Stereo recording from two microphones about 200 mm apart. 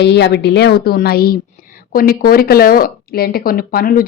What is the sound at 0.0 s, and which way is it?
Speech, 60° left (ahead or behind).